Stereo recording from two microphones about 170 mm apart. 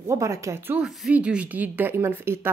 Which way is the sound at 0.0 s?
15° right (ahead or behind).